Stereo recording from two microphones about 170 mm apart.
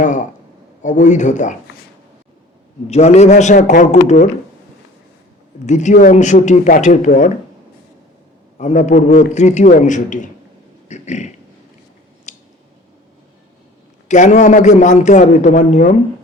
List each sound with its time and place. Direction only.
0.0 s a man's voice: 45° left (ahead or behind)
2.8 s a man's voice: 40° left (ahead or behind)
5.6 s a man's voice: 45° left (ahead or behind)
8.5 s a man's voice: 45° left (ahead or behind)
10.8 s a sound: 40° left (ahead or behind)
12.3 s scissors: 45° left (ahead or behind)
14.1 s a man's voice: 45° left (ahead or behind)